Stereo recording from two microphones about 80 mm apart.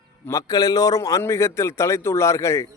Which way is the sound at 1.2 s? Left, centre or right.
Left.